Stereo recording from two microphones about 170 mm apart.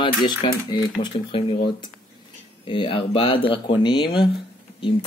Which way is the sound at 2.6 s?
30° left (ahead or behind).